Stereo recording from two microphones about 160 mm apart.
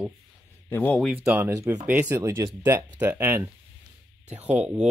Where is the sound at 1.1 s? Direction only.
15° right (ahead or behind).